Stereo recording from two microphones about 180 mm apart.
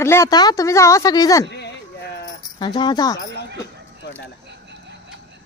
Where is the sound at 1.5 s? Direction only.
75° left (ahead or behind).